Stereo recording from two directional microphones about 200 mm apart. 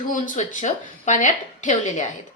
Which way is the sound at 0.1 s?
40° left (ahead or behind).